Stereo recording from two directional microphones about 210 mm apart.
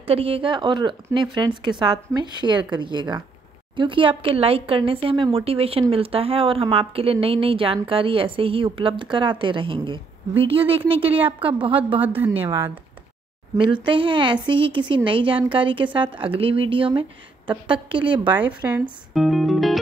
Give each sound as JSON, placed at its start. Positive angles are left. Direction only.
{"t": 0.0, "sound": "speech", "side_deg": -25}
{"t": 12.2, "sound": "speech", "side_deg": -10}
{"t": 13.8, "sound": "speech", "side_deg": -25}
{"t": 18.2, "sound": "speech", "side_deg": -10}